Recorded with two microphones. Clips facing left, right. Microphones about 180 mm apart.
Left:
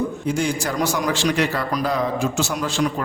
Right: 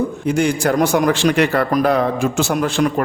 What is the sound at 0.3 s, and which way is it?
A man's voice, 60° right (ahead or behind).